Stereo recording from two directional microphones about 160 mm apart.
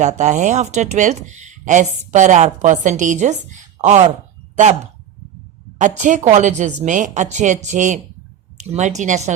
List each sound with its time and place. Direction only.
0.0 s speech: 50° right (ahead or behind)
6.0 s a woman's voice: 50° right (ahead or behind)